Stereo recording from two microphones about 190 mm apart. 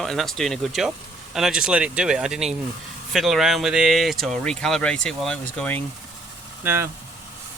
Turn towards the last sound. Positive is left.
turn(degrees=-10)  # may be behind; listen again after turning